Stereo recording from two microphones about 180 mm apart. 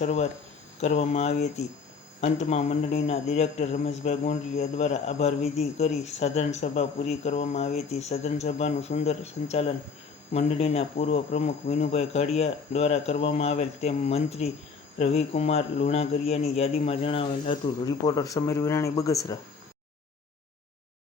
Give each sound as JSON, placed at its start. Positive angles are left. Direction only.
{"t": 0.0, "sound": "a man's voice", "side_deg": 40}
{"t": 17.8, "sound": "speech", "side_deg": 20}